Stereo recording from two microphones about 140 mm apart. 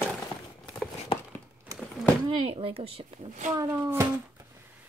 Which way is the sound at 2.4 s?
40° right (ahead or behind).